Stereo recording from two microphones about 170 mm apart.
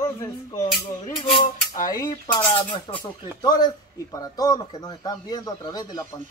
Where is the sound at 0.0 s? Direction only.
20° left (ahead or behind).